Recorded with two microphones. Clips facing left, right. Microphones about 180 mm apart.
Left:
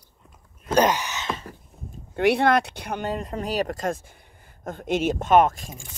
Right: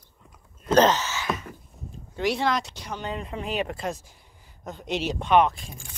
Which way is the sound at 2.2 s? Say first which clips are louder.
Left 6 dB; 60° left (ahead or behind).